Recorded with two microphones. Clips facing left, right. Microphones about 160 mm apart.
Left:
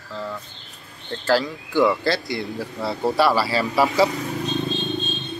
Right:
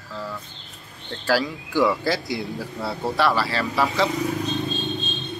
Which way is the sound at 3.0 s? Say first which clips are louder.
Left 3 dB; 10° left (ahead or behind).